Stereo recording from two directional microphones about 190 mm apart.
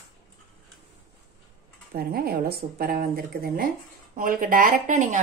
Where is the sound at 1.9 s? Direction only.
55° right (ahead or behind).